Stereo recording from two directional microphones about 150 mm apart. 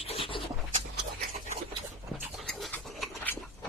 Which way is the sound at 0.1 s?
35° left (ahead or behind).